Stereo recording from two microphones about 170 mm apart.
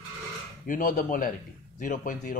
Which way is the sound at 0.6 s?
55° left (ahead or behind).